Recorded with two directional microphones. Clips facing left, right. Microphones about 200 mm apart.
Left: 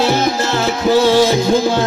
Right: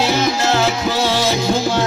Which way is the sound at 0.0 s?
55° left (ahead or behind).